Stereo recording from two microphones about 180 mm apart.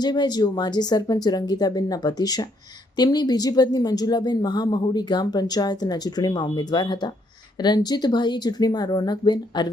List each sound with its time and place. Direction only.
0.0 s speech: 25° left (ahead or behind)